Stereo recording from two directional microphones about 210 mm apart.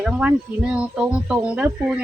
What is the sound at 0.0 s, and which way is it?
Speech, 5° right (ahead or behind).